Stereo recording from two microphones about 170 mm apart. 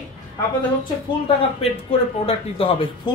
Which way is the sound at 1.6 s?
35° left (ahead or behind).